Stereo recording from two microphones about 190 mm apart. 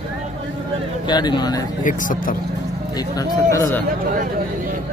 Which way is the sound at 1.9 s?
45° left (ahead or behind).